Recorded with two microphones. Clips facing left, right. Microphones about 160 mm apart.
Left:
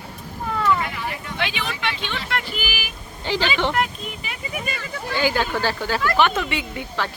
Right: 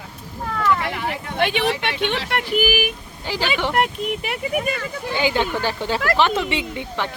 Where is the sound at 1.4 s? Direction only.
55° right (ahead or behind).